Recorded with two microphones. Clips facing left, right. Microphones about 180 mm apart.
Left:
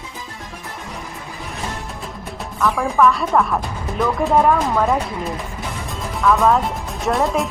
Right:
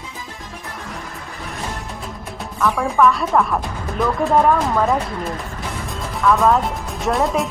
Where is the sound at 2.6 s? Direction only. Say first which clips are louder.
Even; centre (ahead or behind).